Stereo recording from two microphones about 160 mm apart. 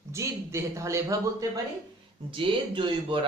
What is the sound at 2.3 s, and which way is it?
Speech, 35° right (ahead or behind).